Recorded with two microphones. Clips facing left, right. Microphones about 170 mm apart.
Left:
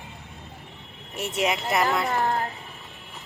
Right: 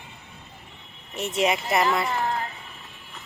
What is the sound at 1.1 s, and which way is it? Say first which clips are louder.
Speech: right 2 dB; 5° left (ahead or behind).